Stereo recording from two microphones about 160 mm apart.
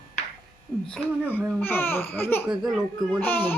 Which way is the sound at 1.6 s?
15° left (ahead or behind).